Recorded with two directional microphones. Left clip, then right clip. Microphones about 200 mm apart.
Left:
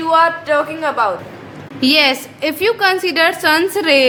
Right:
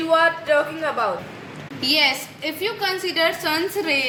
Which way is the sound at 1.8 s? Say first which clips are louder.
Left 6 dB; 50° left (ahead or behind).